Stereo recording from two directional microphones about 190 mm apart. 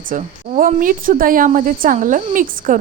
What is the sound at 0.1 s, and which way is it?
A woman's voice, 40° right (ahead or behind).